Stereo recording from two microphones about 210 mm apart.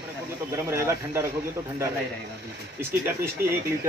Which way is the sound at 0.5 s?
15° right (ahead or behind).